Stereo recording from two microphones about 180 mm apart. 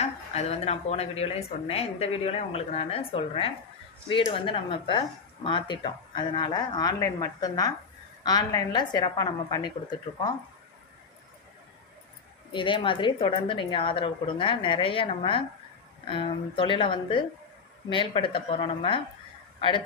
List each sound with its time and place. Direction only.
0.0 s a woman's voice: 35° left (ahead or behind)
12.5 s speech: 25° left (ahead or behind)